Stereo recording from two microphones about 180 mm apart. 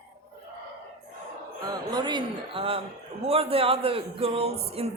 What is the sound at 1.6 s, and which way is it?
A man's voice, 20° right (ahead or behind).